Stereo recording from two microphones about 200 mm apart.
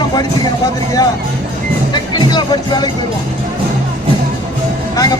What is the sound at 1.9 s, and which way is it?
Speech, 20° left (ahead or behind).